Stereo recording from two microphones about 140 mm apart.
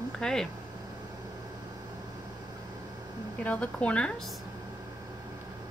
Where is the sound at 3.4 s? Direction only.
10° left (ahead or behind).